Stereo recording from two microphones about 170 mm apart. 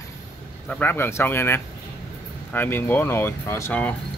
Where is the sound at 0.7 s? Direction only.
10° left (ahead or behind).